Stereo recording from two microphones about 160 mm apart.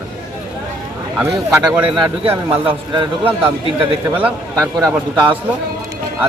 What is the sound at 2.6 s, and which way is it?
A man's voice, 35° right (ahead or behind).